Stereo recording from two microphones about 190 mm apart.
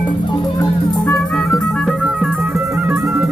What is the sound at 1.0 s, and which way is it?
Music, 10° left (ahead or behind).